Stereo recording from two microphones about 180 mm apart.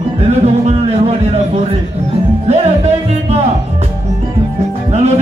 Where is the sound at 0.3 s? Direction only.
40° right (ahead or behind).